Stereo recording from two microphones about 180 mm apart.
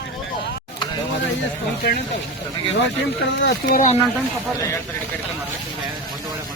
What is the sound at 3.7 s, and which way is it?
Speech, 40° left (ahead or behind).